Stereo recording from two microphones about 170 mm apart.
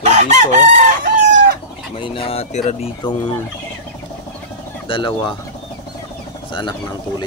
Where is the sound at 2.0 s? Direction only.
30° left (ahead or behind).